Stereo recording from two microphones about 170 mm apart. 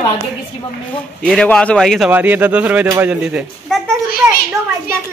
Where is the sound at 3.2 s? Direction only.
5° right (ahead or behind).